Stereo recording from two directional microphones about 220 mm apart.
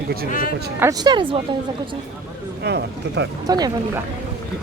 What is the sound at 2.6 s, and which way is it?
Speech, 50° right (ahead or behind).